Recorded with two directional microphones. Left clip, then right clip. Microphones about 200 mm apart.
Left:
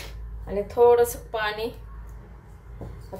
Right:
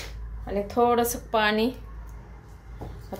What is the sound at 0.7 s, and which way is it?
Speech, 45° right (ahead or behind).